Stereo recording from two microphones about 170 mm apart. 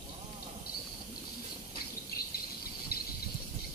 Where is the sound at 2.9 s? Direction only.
65° left (ahead or behind).